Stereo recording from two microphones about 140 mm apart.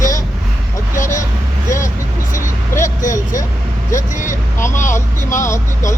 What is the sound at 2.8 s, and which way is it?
Speech, 65° left (ahead or behind).